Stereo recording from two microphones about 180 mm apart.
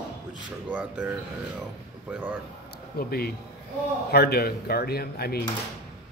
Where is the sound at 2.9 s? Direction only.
60° left (ahead or behind).